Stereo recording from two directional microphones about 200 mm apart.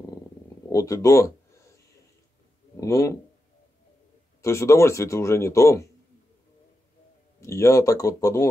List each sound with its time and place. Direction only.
0.7 s a man's voice: 15° left (ahead or behind)
2.8 s a man's voice: 15° left (ahead or behind)
4.4 s a man's voice: 15° left (ahead or behind)
7.3 s a man's voice: 15° left (ahead or behind)